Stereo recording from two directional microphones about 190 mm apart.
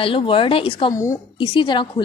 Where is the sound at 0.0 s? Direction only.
25° left (ahead or behind).